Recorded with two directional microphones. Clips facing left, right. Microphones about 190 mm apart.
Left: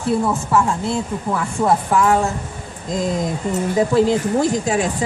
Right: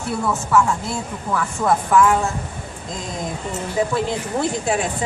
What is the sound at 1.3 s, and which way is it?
Speech, 25° left (ahead or behind).